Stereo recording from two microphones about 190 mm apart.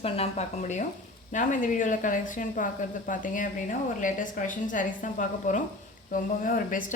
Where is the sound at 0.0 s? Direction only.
35° left (ahead or behind).